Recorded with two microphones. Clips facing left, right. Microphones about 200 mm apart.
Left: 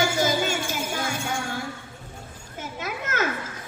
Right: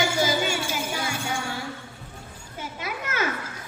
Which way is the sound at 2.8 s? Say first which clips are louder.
Left 2 dB; 50° left (ahead or behind).